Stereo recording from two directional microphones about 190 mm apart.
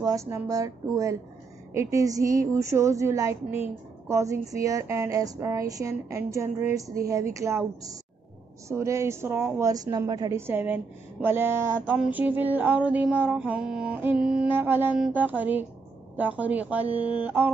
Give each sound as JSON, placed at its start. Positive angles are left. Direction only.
{"t": 0.0, "sound": "a woman's voice", "side_deg": -15}